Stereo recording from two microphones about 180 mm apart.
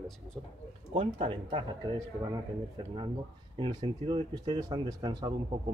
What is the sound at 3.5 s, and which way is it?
Speech, 25° right (ahead or behind).